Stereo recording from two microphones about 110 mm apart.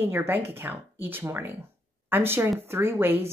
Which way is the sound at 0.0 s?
20° right (ahead or behind).